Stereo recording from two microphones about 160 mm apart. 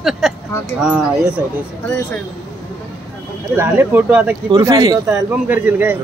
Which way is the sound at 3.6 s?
10° right (ahead or behind).